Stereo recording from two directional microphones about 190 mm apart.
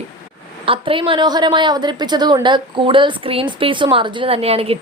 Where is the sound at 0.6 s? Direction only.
30° right (ahead or behind).